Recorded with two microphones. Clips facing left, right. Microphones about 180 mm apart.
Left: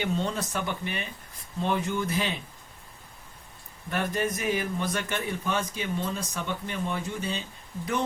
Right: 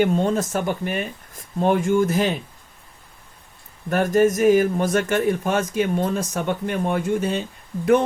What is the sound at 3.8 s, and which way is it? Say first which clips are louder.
Speech: right 11 dB; 45° right (ahead or behind).